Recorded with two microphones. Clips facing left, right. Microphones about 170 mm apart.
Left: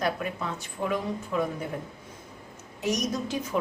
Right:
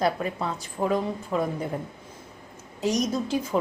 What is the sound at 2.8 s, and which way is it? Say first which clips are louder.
Speech: right 3 dB; 30° right (ahead or behind).